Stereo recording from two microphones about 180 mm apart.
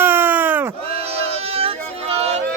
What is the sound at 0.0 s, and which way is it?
Sheep, 10° right (ahead or behind).